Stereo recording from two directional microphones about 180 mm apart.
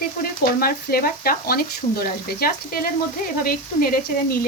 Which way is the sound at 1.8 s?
35° left (ahead or behind).